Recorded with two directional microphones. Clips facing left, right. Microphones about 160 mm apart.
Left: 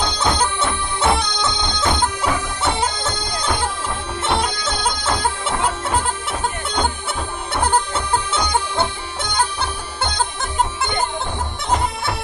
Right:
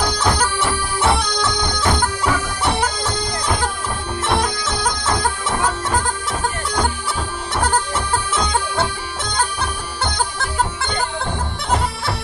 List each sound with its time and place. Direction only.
0.0 s music: 25° left (ahead or behind)
4.2 s bagpipes: 25° left (ahead or behind)
7.5 s bagpipes: 25° left (ahead or behind)